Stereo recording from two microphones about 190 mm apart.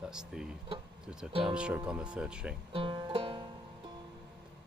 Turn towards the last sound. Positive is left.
turn(degrees=-25)  # may be behind; listen again after turning